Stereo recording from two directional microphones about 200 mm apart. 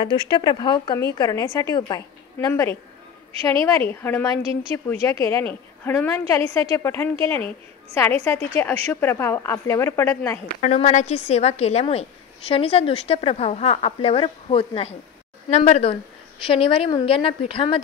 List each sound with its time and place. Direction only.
0.0 s a woman's voice: 20° left (ahead or behind)
4.4 s a woman's voice: 25° right (ahead or behind)
5.0 s a woman's voice: 15° left (ahead or behind)
10.6 s a woman's voice: 35° left (ahead or behind)